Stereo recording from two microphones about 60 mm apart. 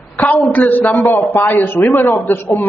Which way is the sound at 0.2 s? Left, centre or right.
Left.